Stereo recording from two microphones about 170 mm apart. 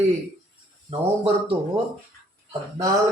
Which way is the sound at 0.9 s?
30° right (ahead or behind).